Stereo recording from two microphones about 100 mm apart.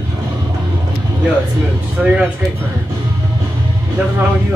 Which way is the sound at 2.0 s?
10° right (ahead or behind).